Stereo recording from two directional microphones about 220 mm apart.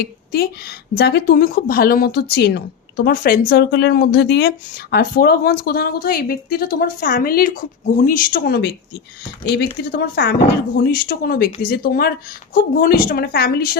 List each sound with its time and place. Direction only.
0.0 s a woman's voice: 45° left (ahead or behind)
9.9 s a woman's voice: 45° left (ahead or behind)